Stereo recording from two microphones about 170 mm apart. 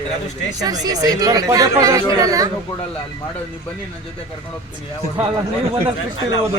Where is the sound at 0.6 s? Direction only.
20° right (ahead or behind).